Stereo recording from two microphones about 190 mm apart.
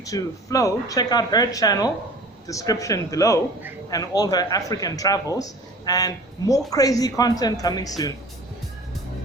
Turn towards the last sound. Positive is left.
turn(degrees=20)  # may be behind; listen again after turning